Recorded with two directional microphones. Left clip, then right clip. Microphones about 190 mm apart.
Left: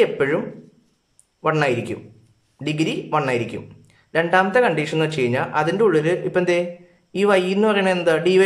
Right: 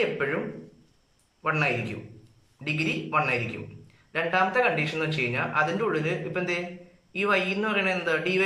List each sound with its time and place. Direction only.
0.0 s a man's voice: 40° left (ahead or behind)
1.4 s a man's voice: 40° left (ahead or behind)